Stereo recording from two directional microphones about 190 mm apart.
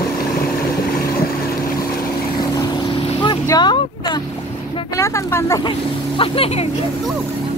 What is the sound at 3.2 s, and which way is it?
Boat, 20° left (ahead or behind).